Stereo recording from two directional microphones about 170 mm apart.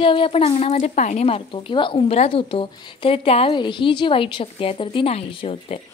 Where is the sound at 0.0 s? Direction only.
30° left (ahead or behind).